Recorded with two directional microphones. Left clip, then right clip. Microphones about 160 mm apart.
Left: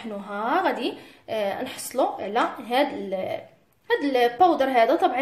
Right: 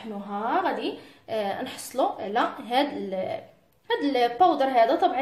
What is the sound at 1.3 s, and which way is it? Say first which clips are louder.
A woman's voice: left 2 dB; 15° left (ahead or behind).